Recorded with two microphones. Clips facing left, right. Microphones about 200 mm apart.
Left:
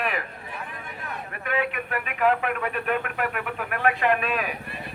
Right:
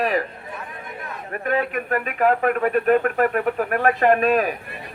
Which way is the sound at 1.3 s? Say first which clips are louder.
Right 5 dB; 40° right (ahead or behind).